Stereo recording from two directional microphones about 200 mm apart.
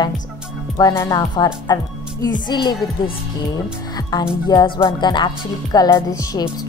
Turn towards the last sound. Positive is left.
turn(degrees=15)  # may be behind; listen again after turning